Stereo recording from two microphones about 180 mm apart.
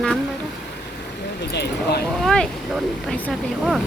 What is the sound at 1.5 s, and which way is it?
Speech, 65° left (ahead or behind).